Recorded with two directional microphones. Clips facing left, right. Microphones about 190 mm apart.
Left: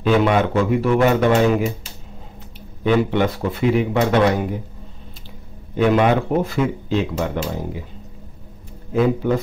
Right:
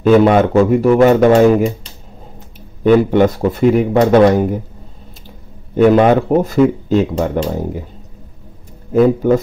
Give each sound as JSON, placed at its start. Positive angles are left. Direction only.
{"t": 0.0, "sound": "speech", "side_deg": -45}
{"t": 2.8, "sound": "speech", "side_deg": -45}
{"t": 5.8, "sound": "speech", "side_deg": -45}
{"t": 8.9, "sound": "speech", "side_deg": -45}